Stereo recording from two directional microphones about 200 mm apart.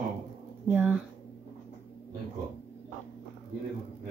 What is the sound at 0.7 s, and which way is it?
Speech, 10° right (ahead or behind).